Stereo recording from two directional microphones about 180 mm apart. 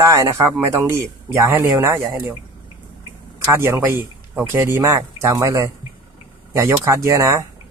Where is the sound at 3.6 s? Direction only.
15° right (ahead or behind).